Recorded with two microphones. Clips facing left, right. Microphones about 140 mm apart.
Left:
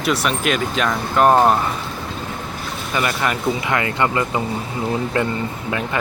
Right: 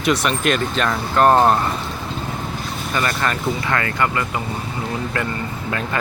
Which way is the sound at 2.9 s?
10° left (ahead or behind).